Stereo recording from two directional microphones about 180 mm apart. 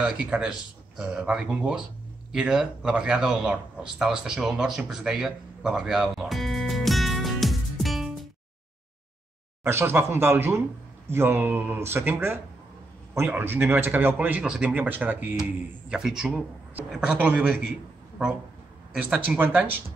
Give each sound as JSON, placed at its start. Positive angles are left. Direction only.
{"t": 0.0, "sound": "a man's voice", "side_deg": -5}
{"t": 9.6, "sound": "a man's voice", "side_deg": -15}
{"t": 18.9, "sound": "a man's voice", "side_deg": -5}